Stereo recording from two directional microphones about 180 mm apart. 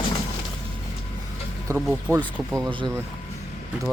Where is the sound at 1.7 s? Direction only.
20° right (ahead or behind).